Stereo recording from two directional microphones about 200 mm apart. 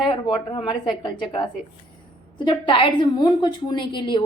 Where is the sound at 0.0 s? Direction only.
25° left (ahead or behind).